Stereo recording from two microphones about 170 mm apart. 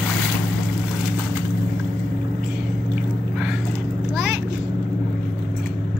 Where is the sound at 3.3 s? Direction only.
5° right (ahead or behind).